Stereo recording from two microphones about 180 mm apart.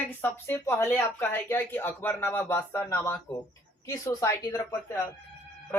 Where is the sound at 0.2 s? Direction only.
10° left (ahead or behind).